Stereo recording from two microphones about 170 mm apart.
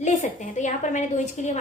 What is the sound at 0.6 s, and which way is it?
Speech, 45° left (ahead or behind).